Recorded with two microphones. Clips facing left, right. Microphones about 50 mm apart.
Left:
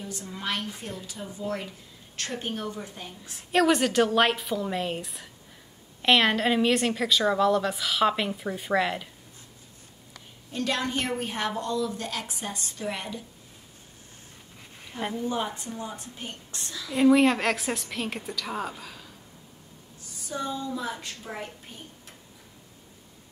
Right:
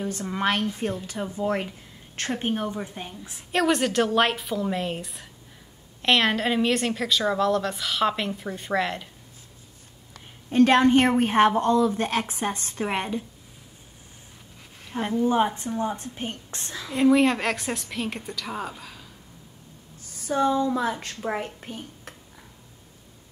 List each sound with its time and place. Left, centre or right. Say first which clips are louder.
0.0 s a woman's voice: right 9 dB; right
3.5 s a woman's voice: even; centre
10.1 s a woman's voice: right 14 dB; right
14.9 s a woman's voice: right 6 dB; centre
15.2 s a woman's voice: right 8 dB; right
16.9 s a woman's voice: even; centre
20.2 s a woman's voice: right 9 dB; right